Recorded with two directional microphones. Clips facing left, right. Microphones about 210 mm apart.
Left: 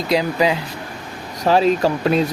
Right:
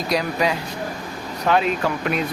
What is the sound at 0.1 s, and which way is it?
Speech, 25° left (ahead or behind).